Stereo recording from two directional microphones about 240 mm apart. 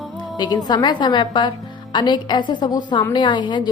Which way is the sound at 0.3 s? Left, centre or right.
Centre.